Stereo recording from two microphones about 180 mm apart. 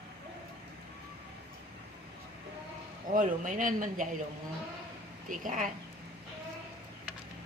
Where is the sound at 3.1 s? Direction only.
50° right (ahead or behind).